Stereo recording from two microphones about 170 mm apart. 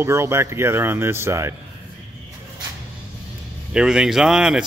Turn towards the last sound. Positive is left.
turn(degrees=-5)  # may be behind; listen again after turning